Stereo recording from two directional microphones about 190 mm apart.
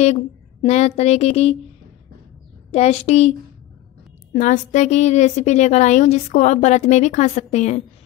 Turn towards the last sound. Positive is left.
turn(degrees=35)  # may be behind; listen again after turning